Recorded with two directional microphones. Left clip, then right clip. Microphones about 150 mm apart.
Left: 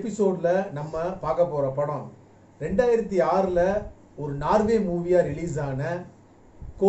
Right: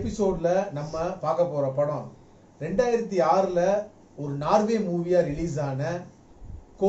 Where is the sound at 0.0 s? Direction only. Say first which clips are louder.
Left 1 dB; 20° left (ahead or behind).